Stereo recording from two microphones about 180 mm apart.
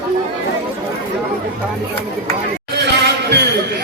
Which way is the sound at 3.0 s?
70° right (ahead or behind).